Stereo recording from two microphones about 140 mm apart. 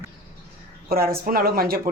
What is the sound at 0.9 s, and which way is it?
Speech, 90° right.